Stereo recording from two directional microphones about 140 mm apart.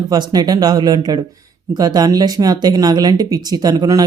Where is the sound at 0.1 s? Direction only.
30° right (ahead or behind).